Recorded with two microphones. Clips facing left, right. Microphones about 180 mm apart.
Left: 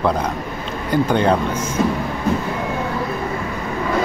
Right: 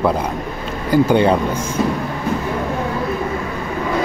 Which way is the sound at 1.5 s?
30° right (ahead or behind).